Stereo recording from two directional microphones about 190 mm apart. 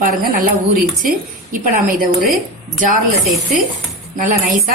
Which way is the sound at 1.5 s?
45° right (ahead or behind).